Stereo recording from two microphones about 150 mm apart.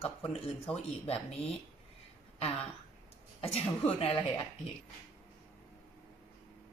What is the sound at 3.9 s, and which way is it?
Speech, 40° left (ahead or behind).